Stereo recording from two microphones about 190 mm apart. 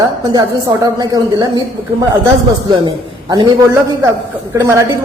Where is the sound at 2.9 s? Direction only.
25° right (ahead or behind).